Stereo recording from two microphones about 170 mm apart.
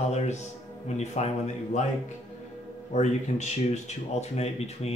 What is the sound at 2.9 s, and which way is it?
Speech, 40° left (ahead or behind).